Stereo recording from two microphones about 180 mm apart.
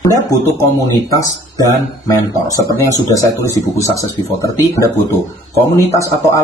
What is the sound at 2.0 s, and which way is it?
Speech, 20° left (ahead or behind).